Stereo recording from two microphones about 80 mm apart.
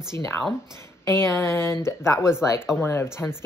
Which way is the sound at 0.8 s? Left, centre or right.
Left.